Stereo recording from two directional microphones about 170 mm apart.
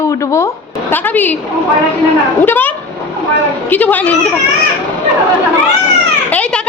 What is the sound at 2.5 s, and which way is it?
Speech, 10° left (ahead or behind).